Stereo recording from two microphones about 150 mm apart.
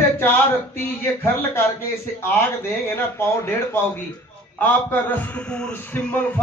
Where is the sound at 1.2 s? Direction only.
15° left (ahead or behind).